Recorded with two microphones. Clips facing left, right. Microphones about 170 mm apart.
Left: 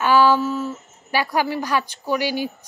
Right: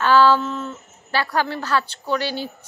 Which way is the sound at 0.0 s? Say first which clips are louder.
Even; 10° left (ahead or behind).